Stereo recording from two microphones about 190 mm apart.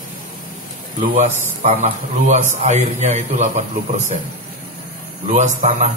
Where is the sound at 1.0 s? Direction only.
35° right (ahead or behind).